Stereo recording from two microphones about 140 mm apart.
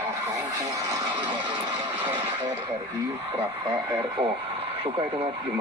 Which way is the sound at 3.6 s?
30° right (ahead or behind).